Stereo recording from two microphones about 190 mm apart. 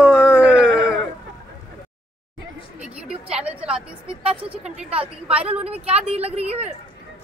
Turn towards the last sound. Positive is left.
turn(degrees=-35)  # may be behind; listen again after turning